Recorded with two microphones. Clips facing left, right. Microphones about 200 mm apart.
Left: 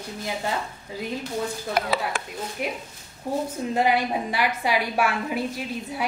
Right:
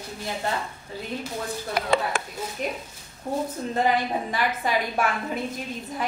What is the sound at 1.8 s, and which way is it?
Speech, 50° left (ahead or behind).